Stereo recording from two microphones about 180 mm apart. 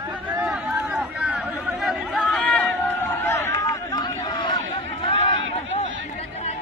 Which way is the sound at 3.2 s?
15° left (ahead or behind).